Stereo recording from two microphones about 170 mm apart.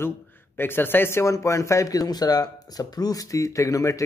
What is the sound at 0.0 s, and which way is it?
A man's voice, 10° left (ahead or behind).